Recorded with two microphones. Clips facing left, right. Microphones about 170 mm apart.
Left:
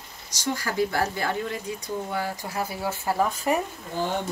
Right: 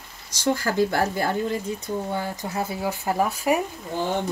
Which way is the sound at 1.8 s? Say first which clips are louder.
Right 2 dB; 25° right (ahead or behind).